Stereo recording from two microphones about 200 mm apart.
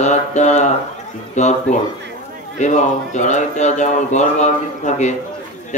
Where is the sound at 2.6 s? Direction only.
35° left (ahead or behind).